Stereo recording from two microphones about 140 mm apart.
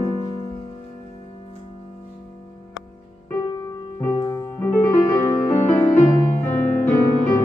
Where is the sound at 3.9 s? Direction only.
25° left (ahead or behind).